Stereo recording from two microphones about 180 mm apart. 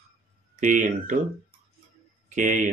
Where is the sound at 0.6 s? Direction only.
45° right (ahead or behind).